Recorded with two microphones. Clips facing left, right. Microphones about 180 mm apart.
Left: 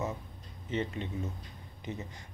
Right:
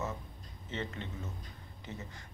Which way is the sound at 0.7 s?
15° left (ahead or behind).